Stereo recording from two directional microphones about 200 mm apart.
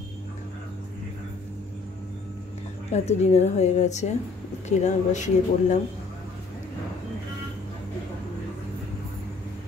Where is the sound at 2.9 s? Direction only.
35° left (ahead or behind).